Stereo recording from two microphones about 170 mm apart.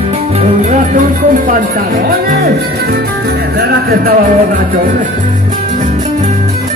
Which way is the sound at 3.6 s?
65° right (ahead or behind).